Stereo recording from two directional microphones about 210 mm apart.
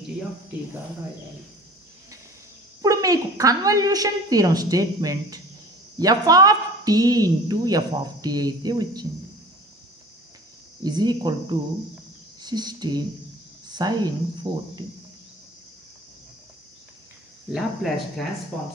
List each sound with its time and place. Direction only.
2.8 s a woman's voice: 15° right (ahead or behind)
10.8 s speech: 20° right (ahead or behind)
17.5 s speech: centre (ahead or behind)